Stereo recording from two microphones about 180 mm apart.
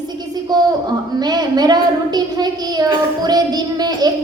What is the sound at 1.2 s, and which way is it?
A woman's voice, 20° right (ahead or behind).